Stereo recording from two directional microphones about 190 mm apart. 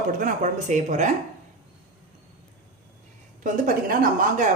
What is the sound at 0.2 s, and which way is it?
Speech, 40° right (ahead or behind).